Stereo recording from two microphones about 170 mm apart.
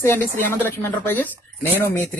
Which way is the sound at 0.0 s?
15° left (ahead or behind).